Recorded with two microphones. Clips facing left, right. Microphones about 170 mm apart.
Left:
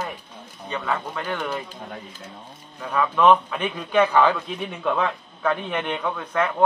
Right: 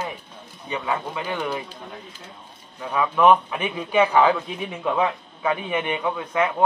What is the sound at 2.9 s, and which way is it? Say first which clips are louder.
A man's voice: even; 10° right (ahead or behind).